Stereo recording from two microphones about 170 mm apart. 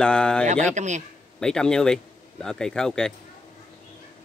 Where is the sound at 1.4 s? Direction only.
5° left (ahead or behind).